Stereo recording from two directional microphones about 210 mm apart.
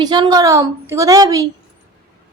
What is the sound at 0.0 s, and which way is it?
A woman's voice, 20° right (ahead or behind).